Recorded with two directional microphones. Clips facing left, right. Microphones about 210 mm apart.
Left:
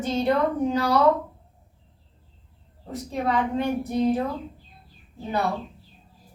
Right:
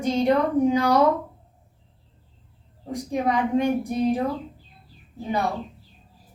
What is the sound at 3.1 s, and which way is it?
A child's voice, 15° right (ahead or behind).